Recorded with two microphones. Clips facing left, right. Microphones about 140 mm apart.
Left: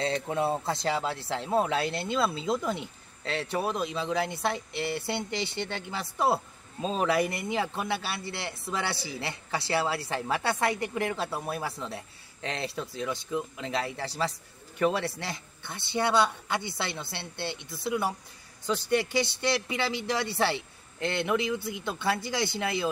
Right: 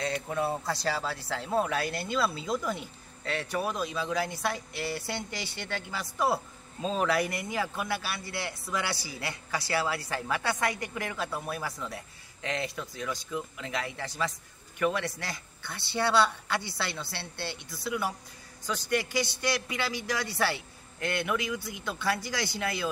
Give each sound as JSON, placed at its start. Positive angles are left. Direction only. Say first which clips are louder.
{"t": 0.0, "sound": "speech", "louder": "left 2 dB", "side_deg": 25}